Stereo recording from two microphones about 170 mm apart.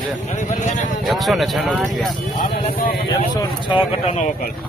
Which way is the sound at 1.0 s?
Centre (ahead or behind).